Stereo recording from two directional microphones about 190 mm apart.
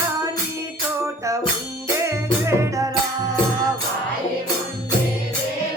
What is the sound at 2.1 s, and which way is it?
Music, 15° right (ahead or behind).